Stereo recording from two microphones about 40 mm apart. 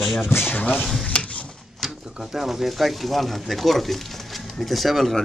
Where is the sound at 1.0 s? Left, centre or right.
Left.